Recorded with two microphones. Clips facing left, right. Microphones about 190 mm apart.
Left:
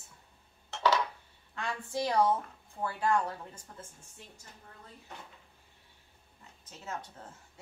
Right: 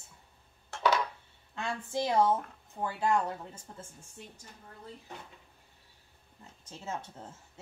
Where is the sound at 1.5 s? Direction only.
25° right (ahead or behind).